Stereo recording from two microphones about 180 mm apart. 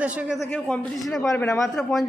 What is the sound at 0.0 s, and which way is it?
Speech, 5° right (ahead or behind).